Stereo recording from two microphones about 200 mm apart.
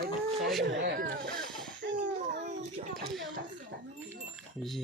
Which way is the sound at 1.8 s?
60° right (ahead or behind).